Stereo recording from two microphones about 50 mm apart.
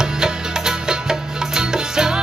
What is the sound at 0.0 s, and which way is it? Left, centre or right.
Music, centre.